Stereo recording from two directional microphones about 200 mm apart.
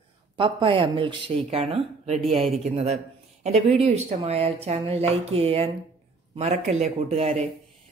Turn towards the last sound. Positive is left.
turn(degrees=-30)  # may be behind; listen again after turning